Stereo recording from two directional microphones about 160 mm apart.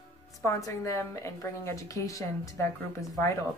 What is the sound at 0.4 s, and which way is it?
A woman's voice, 20° left (ahead or behind).